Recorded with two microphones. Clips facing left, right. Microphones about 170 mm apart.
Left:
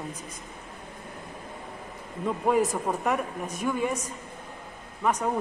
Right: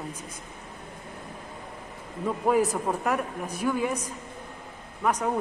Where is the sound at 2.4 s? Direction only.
10° right (ahead or behind).